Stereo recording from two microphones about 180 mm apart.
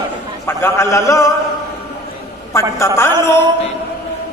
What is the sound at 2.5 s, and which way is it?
Speech, 15° left (ahead or behind).